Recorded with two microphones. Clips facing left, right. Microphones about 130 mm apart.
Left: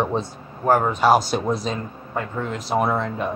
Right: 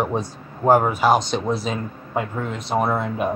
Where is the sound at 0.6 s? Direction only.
20° right (ahead or behind).